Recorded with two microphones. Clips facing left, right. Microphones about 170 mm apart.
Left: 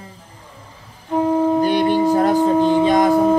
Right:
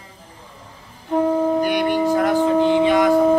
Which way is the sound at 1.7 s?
30° left (ahead or behind).